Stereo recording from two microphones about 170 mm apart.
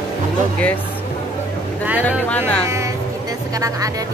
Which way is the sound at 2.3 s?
5° left (ahead or behind).